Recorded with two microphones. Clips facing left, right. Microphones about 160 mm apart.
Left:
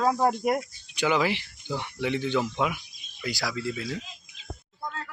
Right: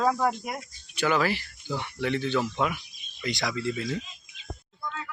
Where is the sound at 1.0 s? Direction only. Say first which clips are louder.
Even; 15° left (ahead or behind).